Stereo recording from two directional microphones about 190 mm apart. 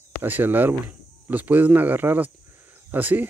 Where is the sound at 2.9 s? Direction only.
10° right (ahead or behind).